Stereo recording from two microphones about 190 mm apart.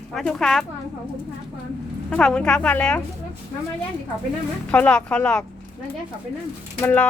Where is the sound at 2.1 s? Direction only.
5° left (ahead or behind).